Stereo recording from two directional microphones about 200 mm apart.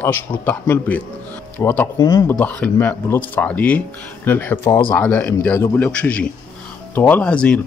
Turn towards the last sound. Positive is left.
turn(degrees=5)  # may be behind; listen again after turning